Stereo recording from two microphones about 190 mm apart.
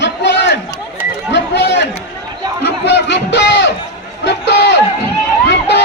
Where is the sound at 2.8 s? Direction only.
65° left (ahead or behind).